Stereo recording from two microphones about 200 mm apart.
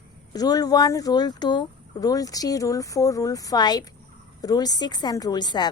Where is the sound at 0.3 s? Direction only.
20° left (ahead or behind).